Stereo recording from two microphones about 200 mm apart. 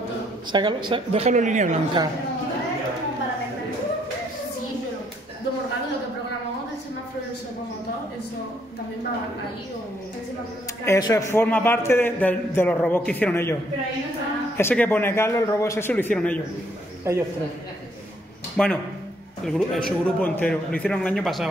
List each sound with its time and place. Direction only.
0.5 s speech: 25° right (ahead or behind)
10.9 s a man's voice: 20° left (ahead or behind)
14.6 s a man's voice: 10° left (ahead or behind)
17.1 s a woman's voice: 15° right (ahead or behind)
18.6 s a man's voice: 5° left (ahead or behind)